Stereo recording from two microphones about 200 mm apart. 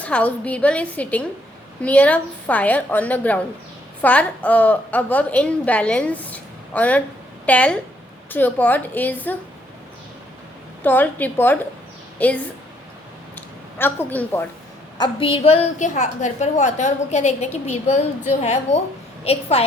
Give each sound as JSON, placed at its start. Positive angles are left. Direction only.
{"t": 0.0, "sound": "a woman's voice", "side_deg": 5}
{"t": 10.8, "sound": "a woman's voice", "side_deg": 10}
{"t": 13.3, "sound": "a sound", "side_deg": 10}
{"t": 14.9, "sound": "a woman's voice", "side_deg": 25}